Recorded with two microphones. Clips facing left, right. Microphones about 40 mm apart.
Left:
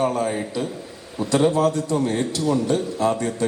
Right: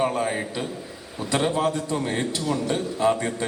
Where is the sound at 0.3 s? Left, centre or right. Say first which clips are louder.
Left 2 dB; right.